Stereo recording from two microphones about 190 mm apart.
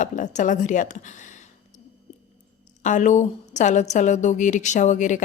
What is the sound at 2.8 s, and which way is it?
A woman's voice, 40° left (ahead or behind).